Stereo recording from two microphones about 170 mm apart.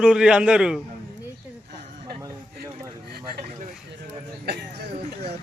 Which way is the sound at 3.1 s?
65° right (ahead or behind).